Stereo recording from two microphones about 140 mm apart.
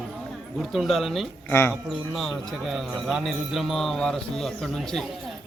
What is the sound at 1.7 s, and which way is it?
Speech, centre (ahead or behind).